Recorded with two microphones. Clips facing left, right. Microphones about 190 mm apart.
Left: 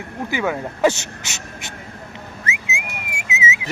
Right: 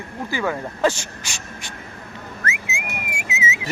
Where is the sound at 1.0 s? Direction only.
25° left (ahead or behind).